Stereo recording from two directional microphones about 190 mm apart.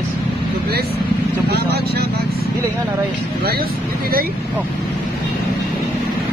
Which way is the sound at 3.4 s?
55° right (ahead or behind).